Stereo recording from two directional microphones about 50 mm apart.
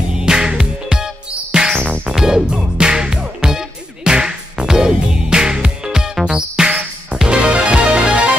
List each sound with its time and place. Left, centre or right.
0.1 s music: centre